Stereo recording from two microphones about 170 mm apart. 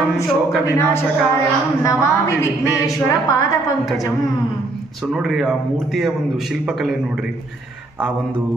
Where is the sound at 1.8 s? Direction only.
20° left (ahead or behind).